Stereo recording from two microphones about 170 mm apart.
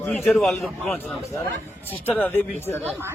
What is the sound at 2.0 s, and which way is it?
Speech, 10° left (ahead or behind).